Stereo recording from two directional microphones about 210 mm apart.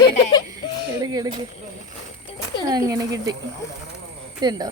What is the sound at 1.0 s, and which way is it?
Speech, 20° right (ahead or behind).